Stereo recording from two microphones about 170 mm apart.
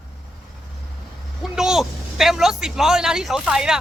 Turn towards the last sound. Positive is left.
turn(degrees=-5)  # may be behind; listen again after turning